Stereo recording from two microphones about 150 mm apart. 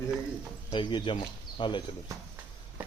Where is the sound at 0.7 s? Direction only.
30° left (ahead or behind).